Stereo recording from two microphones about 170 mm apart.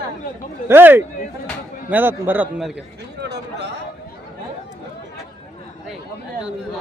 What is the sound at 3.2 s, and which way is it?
Speech, 75° right (ahead or behind).